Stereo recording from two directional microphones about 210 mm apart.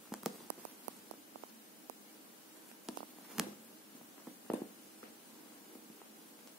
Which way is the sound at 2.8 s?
Centre (ahead or behind).